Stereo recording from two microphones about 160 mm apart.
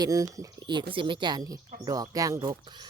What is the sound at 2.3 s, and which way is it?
Speech, 35° right (ahead or behind).